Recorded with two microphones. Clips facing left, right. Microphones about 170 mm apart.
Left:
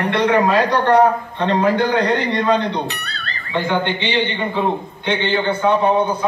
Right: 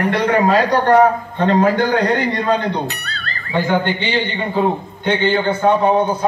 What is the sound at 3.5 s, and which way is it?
Speech, 40° right (ahead or behind).